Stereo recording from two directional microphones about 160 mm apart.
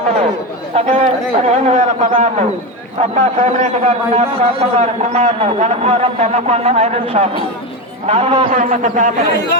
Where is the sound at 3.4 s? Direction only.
45° right (ahead or behind).